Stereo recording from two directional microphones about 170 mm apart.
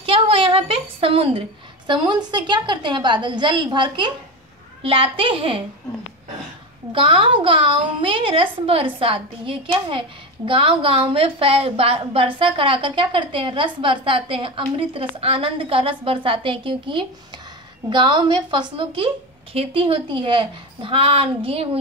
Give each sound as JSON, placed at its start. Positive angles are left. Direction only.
{"t": 0.0, "sound": "a sound", "side_deg": -30}
{"t": 1.9, "sound": "a woman's voice", "side_deg": -25}
{"t": 6.9, "sound": "a woman's voice", "side_deg": -30}